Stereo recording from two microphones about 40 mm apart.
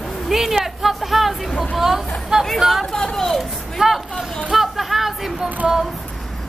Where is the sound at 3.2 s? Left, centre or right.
Centre.